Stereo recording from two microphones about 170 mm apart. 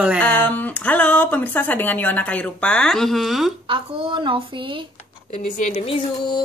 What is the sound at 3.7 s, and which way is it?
Speech, 30° right (ahead or behind).